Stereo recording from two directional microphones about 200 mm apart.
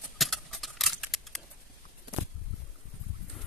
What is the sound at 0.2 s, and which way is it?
Keys jangling, centre (ahead or behind).